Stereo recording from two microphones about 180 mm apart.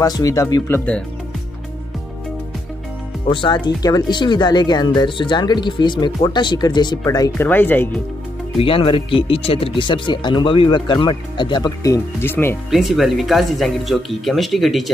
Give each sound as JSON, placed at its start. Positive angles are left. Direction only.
{"t": 0.0, "sound": "speech", "side_deg": 20}
{"t": 3.3, "sound": "speech", "side_deg": 25}
{"t": 8.5, "sound": "speech", "side_deg": 30}
{"t": 12.7, "sound": "speech", "side_deg": 0}